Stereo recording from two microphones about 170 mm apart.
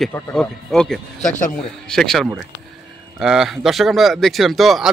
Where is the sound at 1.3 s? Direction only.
50° left (ahead or behind).